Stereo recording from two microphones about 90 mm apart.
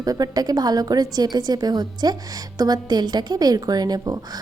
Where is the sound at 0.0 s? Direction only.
45° right (ahead or behind).